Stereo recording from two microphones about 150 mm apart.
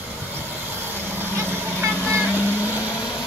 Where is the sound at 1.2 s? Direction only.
15° right (ahead or behind).